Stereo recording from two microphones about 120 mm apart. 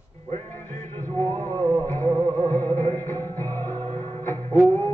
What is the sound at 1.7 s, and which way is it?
Music, 20° left (ahead or behind).